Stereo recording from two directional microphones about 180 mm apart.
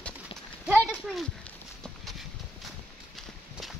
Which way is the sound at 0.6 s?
5° right (ahead or behind).